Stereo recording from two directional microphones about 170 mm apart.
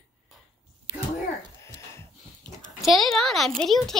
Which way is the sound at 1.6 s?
15° left (ahead or behind).